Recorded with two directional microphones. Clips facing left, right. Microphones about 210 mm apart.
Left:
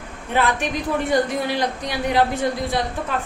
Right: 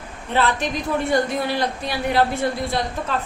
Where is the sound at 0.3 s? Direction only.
15° left (ahead or behind).